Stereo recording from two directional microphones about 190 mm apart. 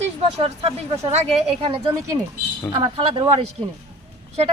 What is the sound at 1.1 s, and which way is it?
Speech, 30° right (ahead or behind).